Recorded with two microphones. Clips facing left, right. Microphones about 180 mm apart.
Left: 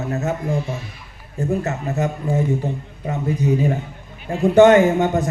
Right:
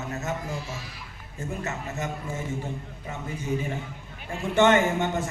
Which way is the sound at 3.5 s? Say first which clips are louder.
Left 9 dB; 40° left (ahead or behind).